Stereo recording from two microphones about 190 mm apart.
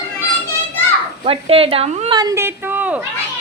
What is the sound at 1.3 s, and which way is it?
Speech, 30° right (ahead or behind).